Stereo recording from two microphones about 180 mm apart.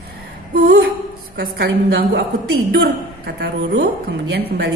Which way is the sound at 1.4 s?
60° right (ahead or behind).